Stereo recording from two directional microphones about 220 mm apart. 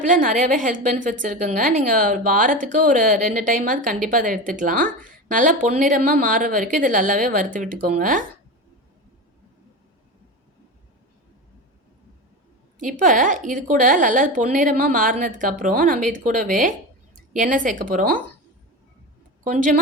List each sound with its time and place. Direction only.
0.0 s a woman's voice: 35° right (ahead or behind)
12.8 s a woman's voice: 35° right (ahead or behind)
19.5 s a woman's voice: 35° right (ahead or behind)